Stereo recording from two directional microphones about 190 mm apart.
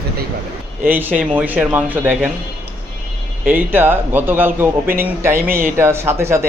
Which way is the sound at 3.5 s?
10° right (ahead or behind).